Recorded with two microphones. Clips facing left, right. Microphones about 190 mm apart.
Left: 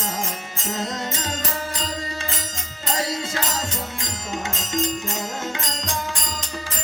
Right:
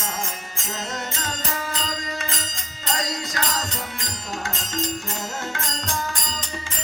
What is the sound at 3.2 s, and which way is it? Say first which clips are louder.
Music: left 1 dB; 25° left (ahead or behind).